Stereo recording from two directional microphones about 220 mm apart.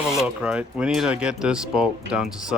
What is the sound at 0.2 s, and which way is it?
Speech, 5° right (ahead or behind).